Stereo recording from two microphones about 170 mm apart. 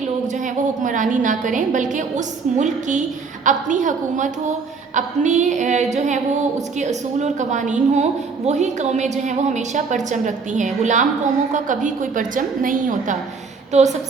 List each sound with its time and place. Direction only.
0.8 s a woman's voice: 50° right (ahead or behind)